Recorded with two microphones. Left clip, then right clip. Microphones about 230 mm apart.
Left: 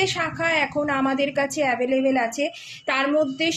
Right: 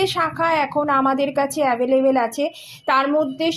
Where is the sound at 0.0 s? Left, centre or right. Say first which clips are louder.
Right 3 dB; centre.